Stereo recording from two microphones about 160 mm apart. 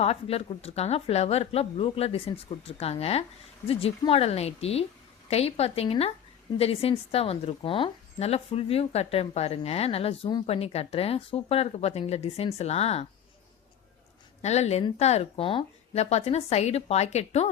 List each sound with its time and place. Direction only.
0.0 s a woman's voice: 40° left (ahead or behind)
14.4 s a woman's voice: 45° left (ahead or behind)